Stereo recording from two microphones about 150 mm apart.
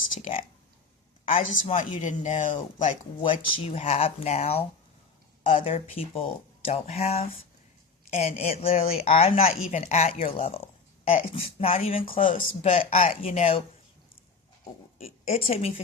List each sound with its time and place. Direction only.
1.3 s speech: 50° left (ahead or behind)
3.2 s speech: 40° left (ahead or behind)
14.9 s speech: 45° left (ahead or behind)